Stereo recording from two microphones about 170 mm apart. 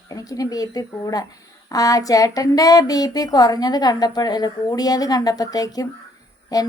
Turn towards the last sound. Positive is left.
turn(degrees=20)  # may be behind; listen again after turning